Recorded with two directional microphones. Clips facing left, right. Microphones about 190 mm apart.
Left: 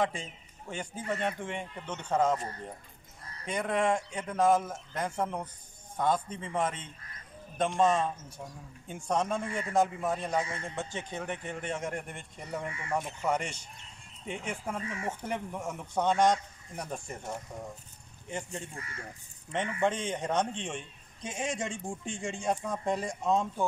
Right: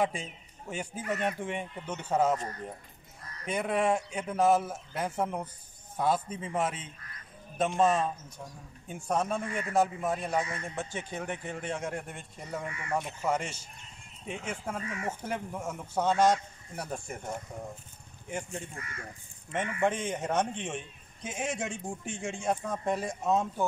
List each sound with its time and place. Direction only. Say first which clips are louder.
0.0 s a man's voice: right 1 dB; 10° right (ahead or behind)
3.4 s a man's voice: right 1 dB; 5° right (ahead or behind)
9.5 s speech: even; 25° left (ahead or behind)
9.8 s speech: even; 5° right (ahead or behind)
10.4 s speech: even; 30° left (ahead or behind)
10.7 s speech: even; 10° right (ahead or behind)
12.6 s speech: even; 25° left (ahead or behind)
13.2 s a man's voice: even; 5° right (ahead or behind)
14.8 s speech: even; 25° left (ahead or behind)
15.2 s a man's voice: even; 5° right (ahead or behind)
18.8 s speech: even; 30° left (ahead or behind)
19.8 s a man's voice: right 1 dB; 5° right (ahead or behind)